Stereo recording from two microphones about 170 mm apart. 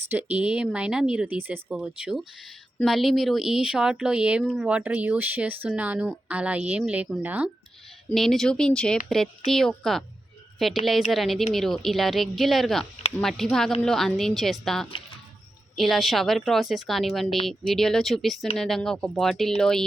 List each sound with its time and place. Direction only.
0.1 s a woman's voice: 10° right (ahead or behind)
8.1 s a woman's voice: centre (ahead or behind)
12.8 s speech: 35° left (ahead or behind)
13.1 s a woman's voice: centre (ahead or behind)